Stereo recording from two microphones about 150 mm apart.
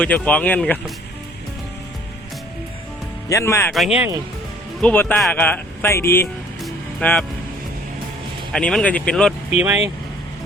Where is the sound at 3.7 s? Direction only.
Centre (ahead or behind).